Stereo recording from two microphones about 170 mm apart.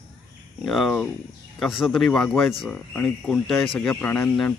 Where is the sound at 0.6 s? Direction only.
Centre (ahead or behind).